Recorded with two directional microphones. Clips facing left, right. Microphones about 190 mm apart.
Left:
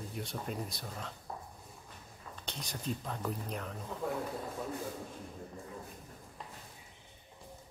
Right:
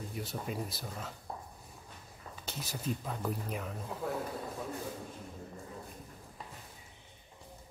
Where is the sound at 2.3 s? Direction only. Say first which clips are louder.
Right 1 dB; 5° right (ahead or behind).